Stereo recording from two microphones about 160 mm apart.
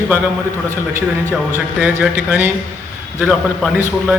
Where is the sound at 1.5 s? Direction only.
15° right (ahead or behind).